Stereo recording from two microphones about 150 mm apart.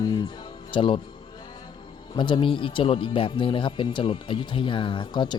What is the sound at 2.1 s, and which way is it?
Speech, 35° left (ahead or behind).